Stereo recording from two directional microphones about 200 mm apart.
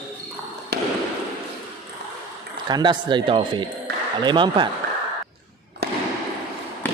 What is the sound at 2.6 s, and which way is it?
Speech, 20° right (ahead or behind).